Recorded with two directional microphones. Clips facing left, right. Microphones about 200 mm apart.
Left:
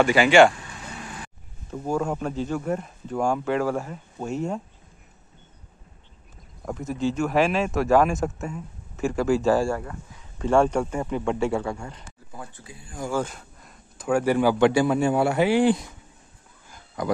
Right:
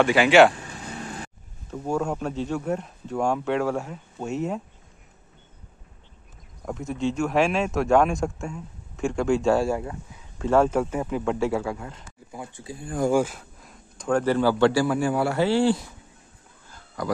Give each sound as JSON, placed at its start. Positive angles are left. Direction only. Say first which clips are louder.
{"t": 0.0, "sound": "speech", "louder": "even", "side_deg": 0}
{"t": 1.7, "sound": "speech", "louder": "even", "side_deg": 0}
{"t": 6.6, "sound": "speech", "louder": "left 1 dB", "side_deg": 0}
{"t": 12.3, "sound": "speech", "louder": "right 3 dB", "side_deg": -15}
{"t": 12.8, "sound": "speech", "louder": "right 9 dB", "side_deg": -55}
{"t": 13.1, "sound": "a man's voice", "louder": "right 5 dB", "side_deg": -5}
{"t": 16.6, "sound": "a sound", "louder": "left 1 dB", "side_deg": 20}